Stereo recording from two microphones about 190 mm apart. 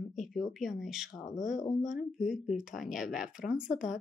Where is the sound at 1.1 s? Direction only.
20° left (ahead or behind).